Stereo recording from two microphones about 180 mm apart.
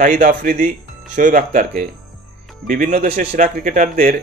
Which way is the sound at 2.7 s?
50° right (ahead or behind).